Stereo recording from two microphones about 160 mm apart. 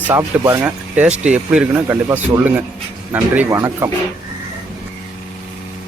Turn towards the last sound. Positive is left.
turn(degrees=-15)  # may be behind; listen again after turning